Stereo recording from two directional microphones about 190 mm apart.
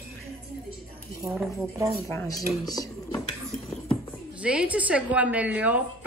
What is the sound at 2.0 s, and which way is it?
Speech, 15° left (ahead or behind).